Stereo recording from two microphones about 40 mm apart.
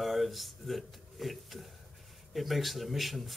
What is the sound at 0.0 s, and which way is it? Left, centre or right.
Speech, centre.